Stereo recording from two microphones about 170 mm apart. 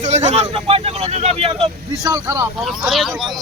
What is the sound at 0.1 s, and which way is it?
Speech, 40° right (ahead or behind).